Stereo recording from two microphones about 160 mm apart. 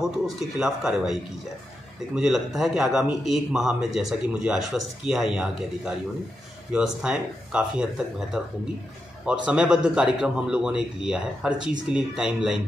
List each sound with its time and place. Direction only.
0.0 s a man's voice: centre (ahead or behind)